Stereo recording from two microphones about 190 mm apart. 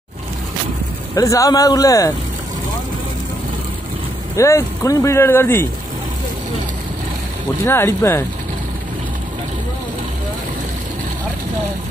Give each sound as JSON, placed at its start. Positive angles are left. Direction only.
{"t": 1.1, "sound": "speech", "side_deg": 15}
{"t": 4.4, "sound": "speech", "side_deg": 15}
{"t": 7.6, "sound": "speech", "side_deg": 15}